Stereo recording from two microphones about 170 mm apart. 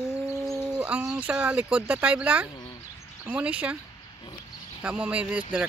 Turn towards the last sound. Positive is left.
turn(degrees=-5)  # may be behind; listen again after turning